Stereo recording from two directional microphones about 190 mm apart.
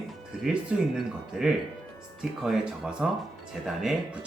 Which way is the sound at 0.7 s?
5° right (ahead or behind).